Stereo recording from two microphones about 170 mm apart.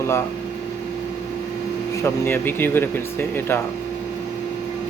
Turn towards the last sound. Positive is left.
turn(degrees=10)  # may be behind; listen again after turning